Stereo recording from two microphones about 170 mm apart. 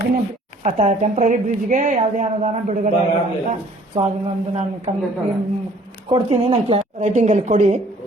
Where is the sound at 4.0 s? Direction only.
35° right (ahead or behind).